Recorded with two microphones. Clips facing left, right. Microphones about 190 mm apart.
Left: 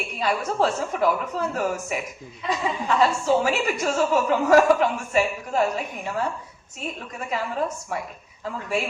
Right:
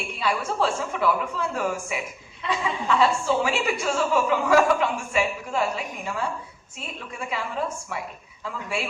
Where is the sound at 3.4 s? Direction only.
40° left (ahead or behind).